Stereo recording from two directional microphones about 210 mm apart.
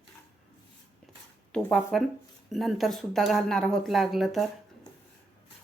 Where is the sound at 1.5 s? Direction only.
Centre (ahead or behind).